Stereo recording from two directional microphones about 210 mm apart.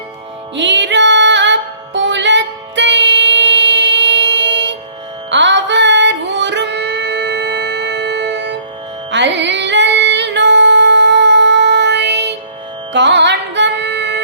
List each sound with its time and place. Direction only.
0.5 s music: 60° right (ahead or behind)